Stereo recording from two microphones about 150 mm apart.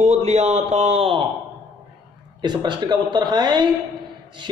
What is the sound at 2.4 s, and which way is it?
Speech, 30° right (ahead or behind).